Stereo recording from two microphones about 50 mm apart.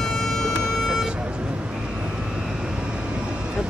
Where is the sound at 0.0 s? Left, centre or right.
Centre.